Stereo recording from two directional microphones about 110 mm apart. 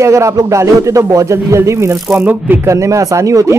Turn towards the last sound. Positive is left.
turn(degrees=-30)  # may be behind; listen again after turning